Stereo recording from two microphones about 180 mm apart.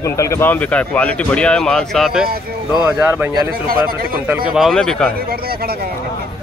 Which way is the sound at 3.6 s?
55° right (ahead or behind).